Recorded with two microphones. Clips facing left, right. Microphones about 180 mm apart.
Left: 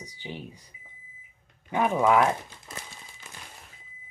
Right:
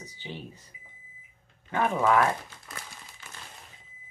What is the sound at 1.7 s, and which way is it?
Speech, 15° left (ahead or behind).